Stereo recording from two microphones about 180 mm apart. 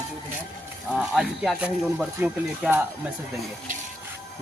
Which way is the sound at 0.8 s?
Centre (ahead or behind).